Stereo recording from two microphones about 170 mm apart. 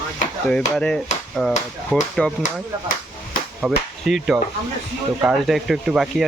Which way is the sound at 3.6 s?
5° right (ahead or behind).